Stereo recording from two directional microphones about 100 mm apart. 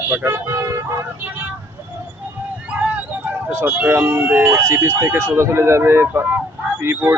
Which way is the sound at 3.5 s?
15° right (ahead or behind).